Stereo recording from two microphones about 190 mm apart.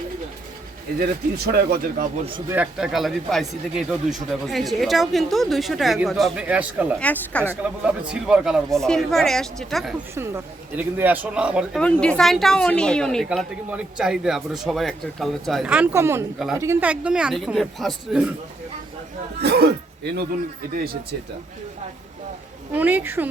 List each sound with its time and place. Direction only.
0.9 s speech: 55° right (ahead or behind)
2.5 s speech: 5° right (ahead or behind)
7.0 s speech: 5° left (ahead or behind)
7.4 s speech: 5° right (ahead or behind)
10.2 s speech: 10° right (ahead or behind)
11.8 s speech: 5° left (ahead or behind)
19.4 s a sound: 55° right (ahead or behind)
22.7 s speech: 10° right (ahead or behind)